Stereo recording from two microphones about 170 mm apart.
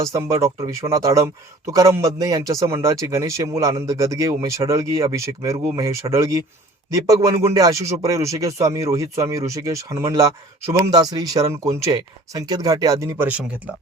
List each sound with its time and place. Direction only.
0.0 s speech: 20° right (ahead or behind)